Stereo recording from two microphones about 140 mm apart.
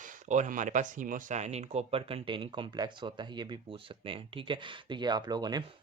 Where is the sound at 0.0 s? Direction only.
60° right (ahead or behind); by 5.6 s 30° right (ahead or behind).